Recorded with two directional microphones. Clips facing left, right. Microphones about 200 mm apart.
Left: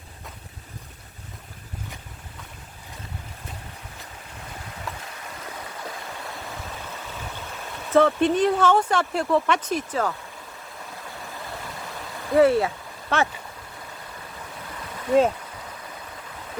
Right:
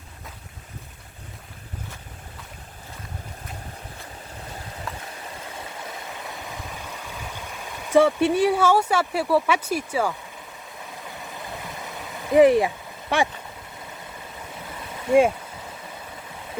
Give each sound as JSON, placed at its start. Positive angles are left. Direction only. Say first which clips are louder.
{"t": 4.9, "sound": "stream", "louder": "even", "side_deg": 0}
{"t": 7.9, "sound": "speech", "louder": "right 1 dB", "side_deg": -10}
{"t": 12.3, "sound": "a sound", "louder": "right 2 dB", "side_deg": -15}